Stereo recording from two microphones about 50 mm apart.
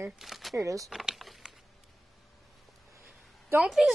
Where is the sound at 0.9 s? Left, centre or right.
Centre.